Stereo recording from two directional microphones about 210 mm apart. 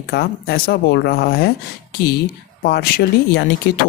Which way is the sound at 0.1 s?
50° left (ahead or behind).